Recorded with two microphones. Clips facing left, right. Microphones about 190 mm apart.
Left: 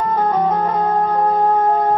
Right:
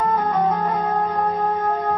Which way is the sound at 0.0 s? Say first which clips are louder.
Left 2 dB; 25° left (ahead or behind).